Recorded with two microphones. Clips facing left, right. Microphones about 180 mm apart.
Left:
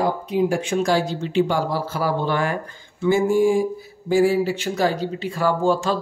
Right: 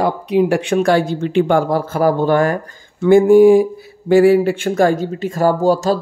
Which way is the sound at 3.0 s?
60° right (ahead or behind).